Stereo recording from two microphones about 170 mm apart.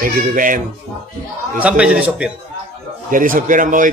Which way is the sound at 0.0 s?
50° right (ahead or behind).